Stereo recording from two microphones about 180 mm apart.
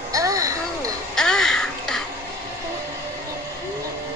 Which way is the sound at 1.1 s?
5° left (ahead or behind).